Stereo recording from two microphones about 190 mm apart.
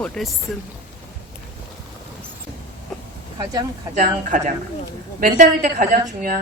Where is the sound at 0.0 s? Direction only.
5° left (ahead or behind).